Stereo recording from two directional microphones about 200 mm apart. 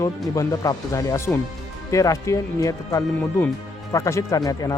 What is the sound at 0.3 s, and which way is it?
Speech, 15° left (ahead or behind).